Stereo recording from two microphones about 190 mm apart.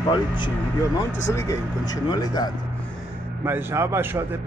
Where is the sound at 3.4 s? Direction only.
15° right (ahead or behind).